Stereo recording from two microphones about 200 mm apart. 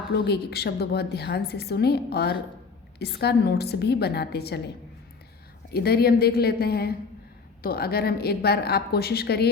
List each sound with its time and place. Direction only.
0.1 s a woman's voice: 55° left (ahead or behind)
5.7 s a woman's voice: 50° left (ahead or behind)